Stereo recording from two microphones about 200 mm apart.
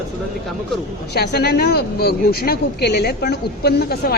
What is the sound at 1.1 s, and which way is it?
A woman's voice, 55° left (ahead or behind).